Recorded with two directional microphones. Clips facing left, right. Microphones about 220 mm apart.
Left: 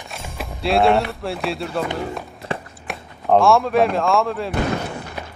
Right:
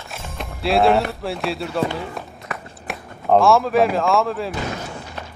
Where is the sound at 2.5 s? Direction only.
30° left (ahead or behind).